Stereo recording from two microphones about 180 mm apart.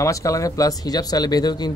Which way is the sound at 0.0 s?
15° left (ahead or behind).